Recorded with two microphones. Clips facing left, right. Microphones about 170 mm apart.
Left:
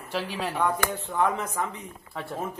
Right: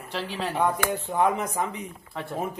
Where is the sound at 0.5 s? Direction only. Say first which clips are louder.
Right 2 dB; 15° right (ahead or behind).